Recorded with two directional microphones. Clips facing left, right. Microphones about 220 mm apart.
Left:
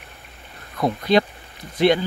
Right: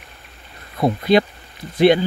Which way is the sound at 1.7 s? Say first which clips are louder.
Right 4 dB; 10° right (ahead or behind).